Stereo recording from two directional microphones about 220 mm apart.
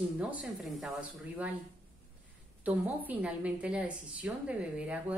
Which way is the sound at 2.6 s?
5° right (ahead or behind).